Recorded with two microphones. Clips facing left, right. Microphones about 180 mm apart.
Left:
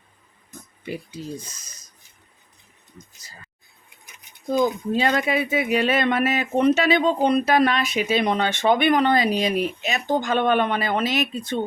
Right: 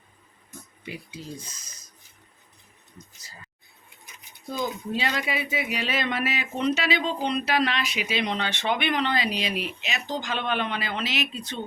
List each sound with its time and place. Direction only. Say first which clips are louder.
4.4 s speech: left 9 dB; 50° left (ahead or behind)